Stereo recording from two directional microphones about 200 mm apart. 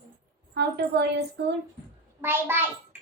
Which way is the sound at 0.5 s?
55° right (ahead or behind).